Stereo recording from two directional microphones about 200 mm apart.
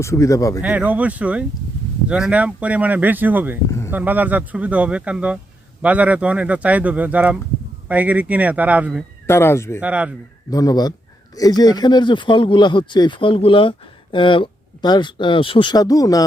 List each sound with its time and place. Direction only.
0.0 s speech: 15° left (ahead or behind)
0.6 s speech: 5° right (ahead or behind)
3.7 s speech: 15° left (ahead or behind)
3.9 s speech: 10° right (ahead or behind)
9.2 s speech: 10° left (ahead or behind)
9.8 s speech: 5° right (ahead or behind)
10.5 s speech: 20° left (ahead or behind)